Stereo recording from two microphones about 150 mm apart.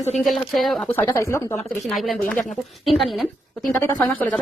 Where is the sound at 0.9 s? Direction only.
15° left (ahead or behind).